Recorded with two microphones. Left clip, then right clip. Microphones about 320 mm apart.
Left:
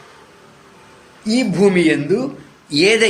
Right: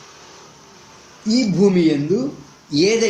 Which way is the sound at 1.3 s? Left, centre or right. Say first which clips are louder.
Left 2 dB; left.